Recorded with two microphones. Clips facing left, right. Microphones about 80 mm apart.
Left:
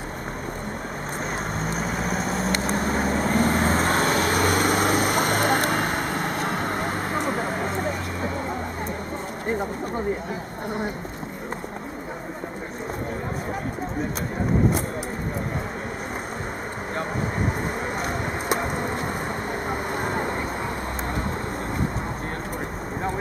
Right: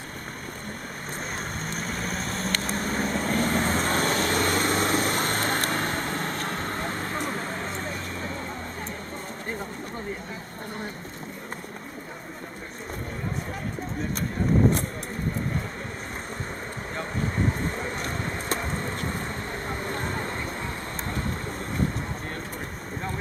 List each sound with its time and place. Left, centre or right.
1.6 s vehicle: centre
3.3 s vehicle: centre
17.7 s vehicle: centre
19.7 s a sound: centre